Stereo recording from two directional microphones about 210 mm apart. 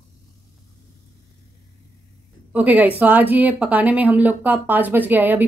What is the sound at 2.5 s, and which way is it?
Speech, 5° right (ahead or behind).